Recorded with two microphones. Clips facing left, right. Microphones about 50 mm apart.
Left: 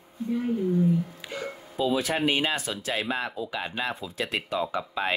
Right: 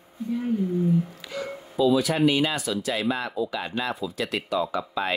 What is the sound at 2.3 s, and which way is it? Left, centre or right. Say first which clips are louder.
Speech: right 3 dB; left.